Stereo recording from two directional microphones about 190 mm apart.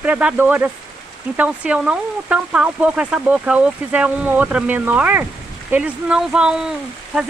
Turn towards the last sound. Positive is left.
turn(degrees=-5)  # may be behind; listen again after turning